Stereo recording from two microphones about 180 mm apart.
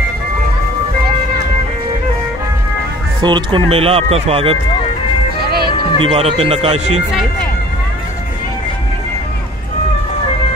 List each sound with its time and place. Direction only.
3.2 s speech: 25° right (ahead or behind)
5.9 s speech: 30° right (ahead or behind)